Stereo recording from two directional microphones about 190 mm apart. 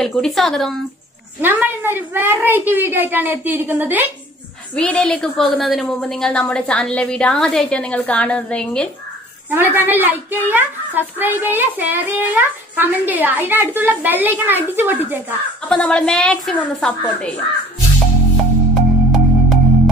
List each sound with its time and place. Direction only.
0.0 s a woman's voice: centre (ahead or behind)
1.4 s a woman's voice: 10° right (ahead or behind)
4.7 s a woman's voice: 5° left (ahead or behind)
9.5 s a woman's voice: 10° right (ahead or behind)
15.7 s a woman's voice: 5° left (ahead or behind)
18.8 s music: centre (ahead or behind)